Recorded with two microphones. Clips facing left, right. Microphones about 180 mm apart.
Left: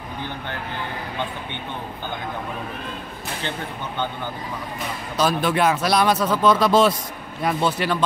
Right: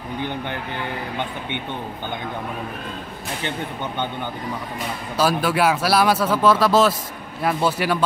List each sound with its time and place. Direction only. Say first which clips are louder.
5.1 s speech: right 1 dB; 5° right (ahead or behind)